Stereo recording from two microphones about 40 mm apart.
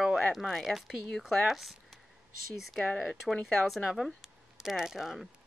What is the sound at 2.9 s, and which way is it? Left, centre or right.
Speech, centre.